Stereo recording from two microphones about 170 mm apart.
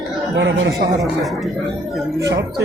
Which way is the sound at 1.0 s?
Centre (ahead or behind).